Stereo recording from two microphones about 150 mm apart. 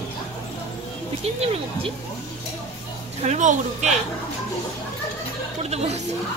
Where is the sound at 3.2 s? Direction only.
50° right (ahead or behind).